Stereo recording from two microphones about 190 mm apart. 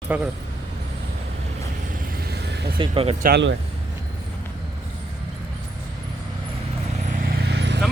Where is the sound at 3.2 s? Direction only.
60° right (ahead or behind).